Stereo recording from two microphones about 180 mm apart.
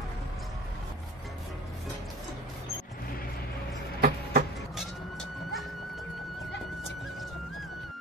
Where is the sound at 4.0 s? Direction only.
55° right (ahead or behind).